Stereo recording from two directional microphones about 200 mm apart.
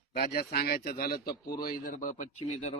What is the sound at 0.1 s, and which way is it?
A man's voice, 50° left (ahead or behind).